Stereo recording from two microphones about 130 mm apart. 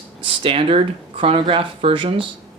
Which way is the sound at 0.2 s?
45° right (ahead or behind).